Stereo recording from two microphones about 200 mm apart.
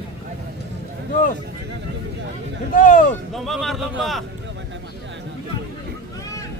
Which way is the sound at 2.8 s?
40° left (ahead or behind).